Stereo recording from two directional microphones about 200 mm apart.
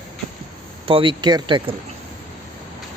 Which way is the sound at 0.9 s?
25° right (ahead or behind).